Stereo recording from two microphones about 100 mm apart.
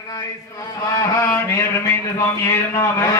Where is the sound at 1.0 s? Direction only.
30° left (ahead or behind).